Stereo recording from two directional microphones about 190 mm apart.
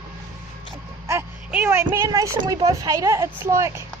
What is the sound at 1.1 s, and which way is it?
Speech, 10° right (ahead or behind).